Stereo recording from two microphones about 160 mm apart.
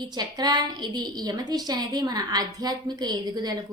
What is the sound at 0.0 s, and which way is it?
A woman's voice, 25° right (ahead or behind).